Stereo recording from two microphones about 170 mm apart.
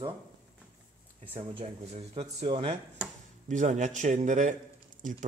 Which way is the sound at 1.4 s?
30° right (ahead or behind).